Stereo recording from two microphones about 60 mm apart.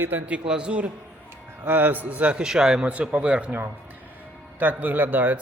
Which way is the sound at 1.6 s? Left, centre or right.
Right.